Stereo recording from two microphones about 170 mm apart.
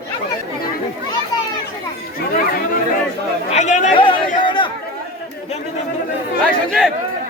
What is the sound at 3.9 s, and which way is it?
Chatter, 30° left (ahead or behind).